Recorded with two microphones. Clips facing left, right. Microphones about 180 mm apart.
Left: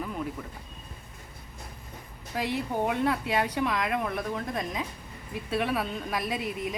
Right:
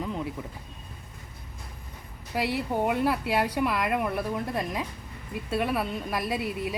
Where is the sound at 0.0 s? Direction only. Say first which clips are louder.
Right 2 dB; 20° right (ahead or behind).